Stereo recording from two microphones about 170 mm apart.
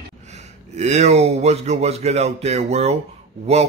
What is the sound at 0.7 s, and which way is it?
Speech, 40° right (ahead or behind).